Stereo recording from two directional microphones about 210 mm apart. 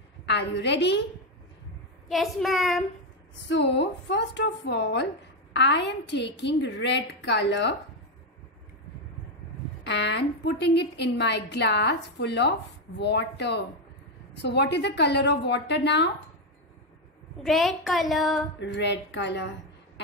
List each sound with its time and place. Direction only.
0.3 s a woman's voice: 55° left (ahead or behind)
2.0 s a woman's voice: centre (ahead or behind)
3.4 s a woman's voice: 55° left (ahead or behind)
9.8 s a woman's voice: 55° left (ahead or behind)
17.4 s a woman's voice: centre (ahead or behind)
18.6 s a woman's voice: 55° left (ahead or behind)